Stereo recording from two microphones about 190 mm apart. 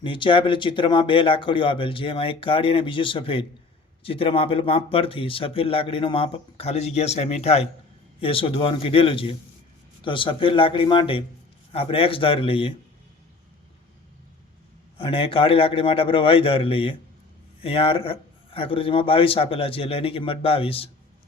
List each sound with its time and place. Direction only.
0.0 s speech: 25° left (ahead or behind)
14.9 s speech: 30° left (ahead or behind)